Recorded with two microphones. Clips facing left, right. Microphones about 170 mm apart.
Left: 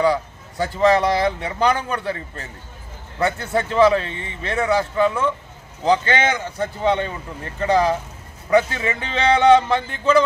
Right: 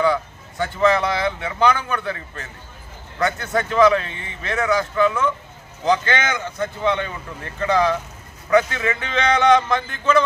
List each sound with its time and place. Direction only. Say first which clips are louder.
0.0 s speech: left 1 dB; 35° left (ahead or behind)